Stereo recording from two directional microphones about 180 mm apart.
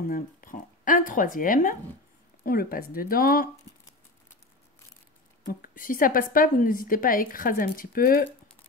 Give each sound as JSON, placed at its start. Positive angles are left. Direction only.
{"t": 0.0, "sound": "a woman's voice", "side_deg": 50}
{"t": 5.4, "sound": "a woman's voice", "side_deg": 50}